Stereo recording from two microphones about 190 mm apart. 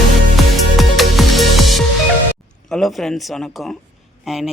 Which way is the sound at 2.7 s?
Centre (ahead or behind).